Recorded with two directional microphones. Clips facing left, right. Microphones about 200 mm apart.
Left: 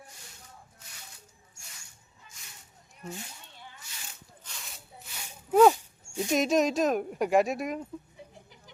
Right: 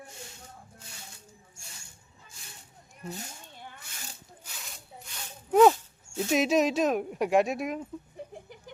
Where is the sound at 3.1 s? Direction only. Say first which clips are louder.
Right 1 dB; 45° right (ahead or behind).